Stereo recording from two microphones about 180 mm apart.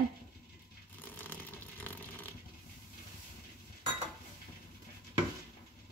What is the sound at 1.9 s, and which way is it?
Zipper, 10° left (ahead or behind).